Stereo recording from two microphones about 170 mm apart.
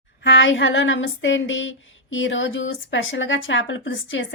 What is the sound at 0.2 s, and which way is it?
Speech, 90° left.